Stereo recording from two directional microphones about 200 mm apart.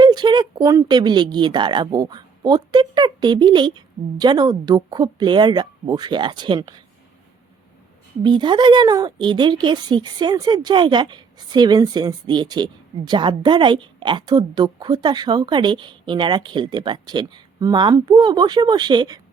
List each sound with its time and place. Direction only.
0.0 s a woman's voice: 20° right (ahead or behind)
8.2 s a woman's voice: 25° right (ahead or behind)